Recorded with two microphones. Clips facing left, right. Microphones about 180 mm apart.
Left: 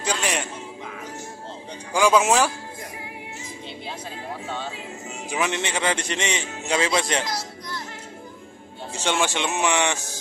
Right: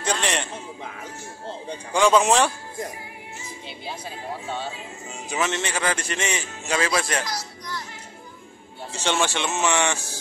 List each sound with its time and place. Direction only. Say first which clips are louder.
0.0 s a sound: right 1 dB; 5° left (ahead or behind)
1.9 s speech: even; 5° left (ahead or behind)
5.3 s a man's voice: even; 15° left (ahead or behind)
8.9 s speech: even; 15° left (ahead or behind)